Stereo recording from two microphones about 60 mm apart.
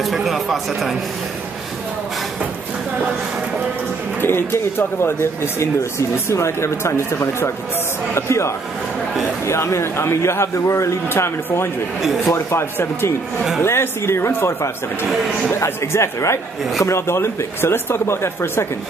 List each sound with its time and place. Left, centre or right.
0.0 s speech: centre
4.2 s speech: left
15.6 s speech: left